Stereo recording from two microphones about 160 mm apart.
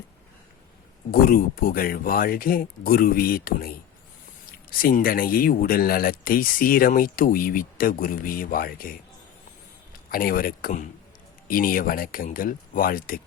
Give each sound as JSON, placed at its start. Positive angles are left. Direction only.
{"t": 1.1, "sound": "speech", "side_deg": 65}
{"t": 10.1, "sound": "speech", "side_deg": 65}